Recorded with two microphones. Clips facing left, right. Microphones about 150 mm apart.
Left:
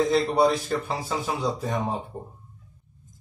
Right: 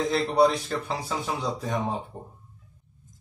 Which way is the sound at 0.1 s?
Centre (ahead or behind).